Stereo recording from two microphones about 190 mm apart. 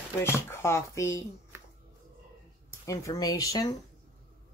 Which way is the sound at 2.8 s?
15° left (ahead or behind).